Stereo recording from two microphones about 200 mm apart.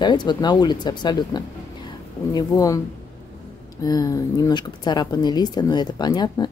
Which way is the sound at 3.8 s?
20° left (ahead or behind).